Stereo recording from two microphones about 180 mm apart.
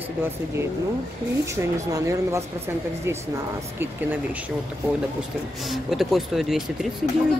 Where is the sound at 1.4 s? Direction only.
15° right (ahead or behind).